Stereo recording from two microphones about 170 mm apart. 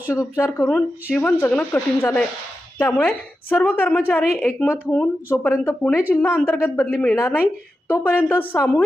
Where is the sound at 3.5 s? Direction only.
10° left (ahead or behind).